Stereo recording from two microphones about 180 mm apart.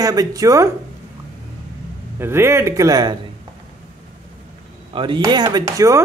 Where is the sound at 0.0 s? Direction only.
20° right (ahead or behind).